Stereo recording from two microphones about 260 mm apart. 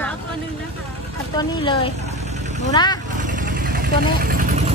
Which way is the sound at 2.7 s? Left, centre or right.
Centre.